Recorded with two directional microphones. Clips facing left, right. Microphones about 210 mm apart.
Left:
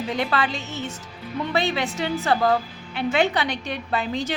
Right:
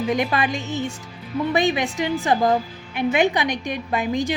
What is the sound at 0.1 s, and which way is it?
A woman's voice, 15° right (ahead or behind).